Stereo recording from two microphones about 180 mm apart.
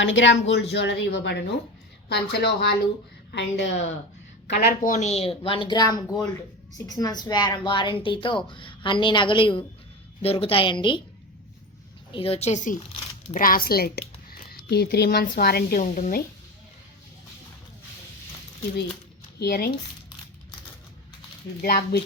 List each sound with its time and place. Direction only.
0.0 s speech: 90° left
0.7 s speech: 75° left (ahead or behind)
3.3 s speech: 75° left (ahead or behind)
4.4 s a woman's voice: 60° left (ahead or behind); by 11.0 s 25° left (ahead or behind)
12.1 s a woman's voice: 30° left (ahead or behind); by 15.8 s 60° left (ahead or behind)
15.8 s speech: 45° left (ahead or behind)
19.4 s speech: 60° left (ahead or behind)
21.6 s speech: 55° left (ahead or behind)